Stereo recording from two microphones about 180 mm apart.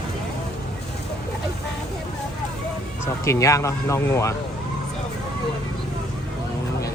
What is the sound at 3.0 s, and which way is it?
Speech, 15° left (ahead or behind).